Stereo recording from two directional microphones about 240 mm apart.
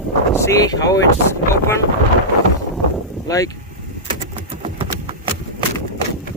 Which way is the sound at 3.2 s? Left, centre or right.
Centre.